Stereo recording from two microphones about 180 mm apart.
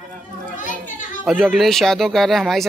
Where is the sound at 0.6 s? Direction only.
45° left (ahead or behind).